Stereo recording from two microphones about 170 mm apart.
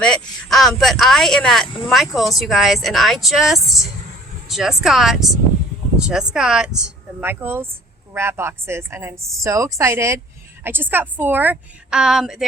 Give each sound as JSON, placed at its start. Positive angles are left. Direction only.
{"t": 0.0, "sound": "a woman's voice", "side_deg": 5}